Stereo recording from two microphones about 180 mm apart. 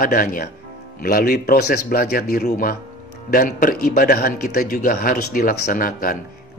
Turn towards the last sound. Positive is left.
turn(degrees=50)  # may be behind; listen again after turning